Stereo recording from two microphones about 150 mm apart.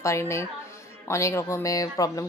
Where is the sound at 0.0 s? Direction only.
20° left (ahead or behind).